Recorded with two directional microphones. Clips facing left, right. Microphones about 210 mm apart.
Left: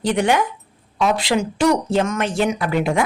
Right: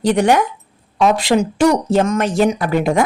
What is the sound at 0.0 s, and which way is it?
Speech, 40° right (ahead or behind).